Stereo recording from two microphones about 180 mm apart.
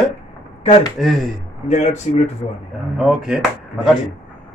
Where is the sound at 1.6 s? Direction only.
40° left (ahead or behind).